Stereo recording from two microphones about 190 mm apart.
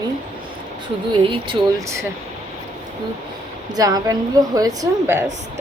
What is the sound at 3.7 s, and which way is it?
Speech, 20° right (ahead or behind).